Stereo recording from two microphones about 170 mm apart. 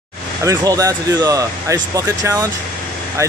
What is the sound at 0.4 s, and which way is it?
Speech, 20° right (ahead or behind).